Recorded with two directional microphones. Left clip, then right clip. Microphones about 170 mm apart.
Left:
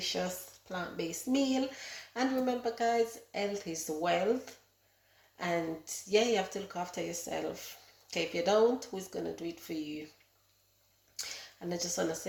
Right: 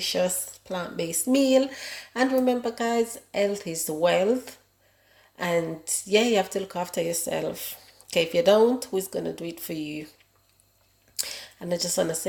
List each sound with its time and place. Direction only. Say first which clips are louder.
0.0 s speech: right 10 dB; 45° right (ahead or behind)
11.7 s speech: right 10 dB; 45° right (ahead or behind)